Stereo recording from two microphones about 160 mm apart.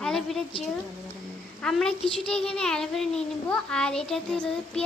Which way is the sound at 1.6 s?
5° left (ahead or behind).